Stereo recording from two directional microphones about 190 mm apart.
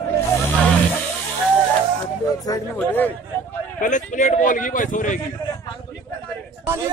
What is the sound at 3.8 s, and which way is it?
Speech, 40° left (ahead or behind).